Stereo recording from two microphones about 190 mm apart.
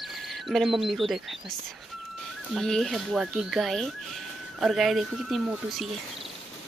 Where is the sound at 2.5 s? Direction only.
Centre (ahead or behind).